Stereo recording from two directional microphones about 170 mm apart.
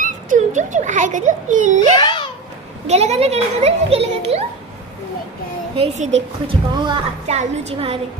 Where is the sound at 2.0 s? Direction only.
25° left (ahead or behind).